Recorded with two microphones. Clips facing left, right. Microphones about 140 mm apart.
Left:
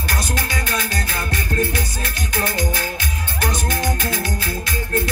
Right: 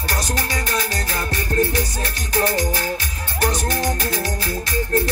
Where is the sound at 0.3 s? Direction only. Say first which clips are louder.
Right 1 dB; 35° right (ahead or behind).